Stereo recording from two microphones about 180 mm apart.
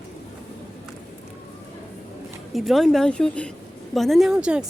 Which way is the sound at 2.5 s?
Centre (ahead or behind).